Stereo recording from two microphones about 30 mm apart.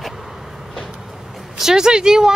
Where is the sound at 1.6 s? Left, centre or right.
Centre.